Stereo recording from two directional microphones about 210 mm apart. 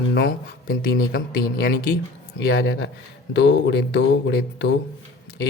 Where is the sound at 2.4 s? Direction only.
60° left (ahead or behind).